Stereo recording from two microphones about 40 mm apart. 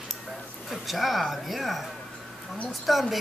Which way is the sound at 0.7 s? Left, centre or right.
Centre.